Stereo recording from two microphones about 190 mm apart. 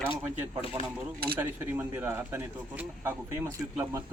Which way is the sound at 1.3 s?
10° right (ahead or behind).